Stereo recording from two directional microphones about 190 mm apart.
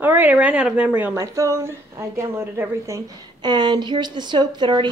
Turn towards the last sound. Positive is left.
turn(degrees=-25)  # may be behind; listen again after turning